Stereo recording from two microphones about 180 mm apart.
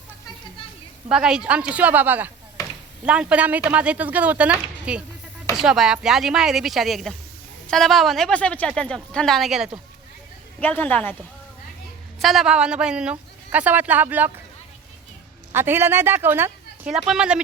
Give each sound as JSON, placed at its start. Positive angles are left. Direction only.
{"t": 1.1, "sound": "speech", "side_deg": -5}
{"t": 2.6, "sound": "chop", "side_deg": 20}
{"t": 3.0, "sound": "a man's voice", "side_deg": -5}
{"t": 12.2, "sound": "a man's voice", "side_deg": 0}
{"t": 15.5, "sound": "a man's voice", "side_deg": -15}